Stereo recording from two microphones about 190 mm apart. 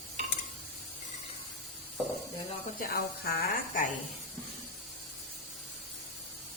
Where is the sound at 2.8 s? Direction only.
45° left (ahead or behind).